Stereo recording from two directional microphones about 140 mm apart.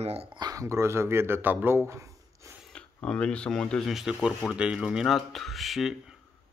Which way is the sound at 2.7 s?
5° left (ahead or behind).